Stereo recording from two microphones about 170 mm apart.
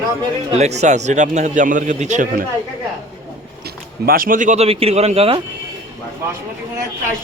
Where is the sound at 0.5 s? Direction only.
40° right (ahead or behind).